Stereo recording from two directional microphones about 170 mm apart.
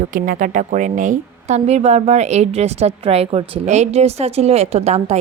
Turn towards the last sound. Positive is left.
turn(degrees=-40)  # may be behind; listen again after turning